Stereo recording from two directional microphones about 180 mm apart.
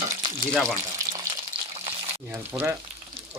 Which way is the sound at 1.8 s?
15° right (ahead or behind).